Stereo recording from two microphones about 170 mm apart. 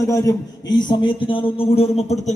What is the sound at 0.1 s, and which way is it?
A man's voice, 20° left (ahead or behind).